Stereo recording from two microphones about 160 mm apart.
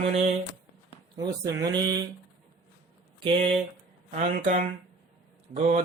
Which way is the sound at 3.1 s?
35° right (ahead or behind).